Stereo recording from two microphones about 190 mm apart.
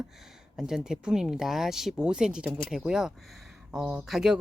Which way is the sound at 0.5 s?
5° right (ahead or behind).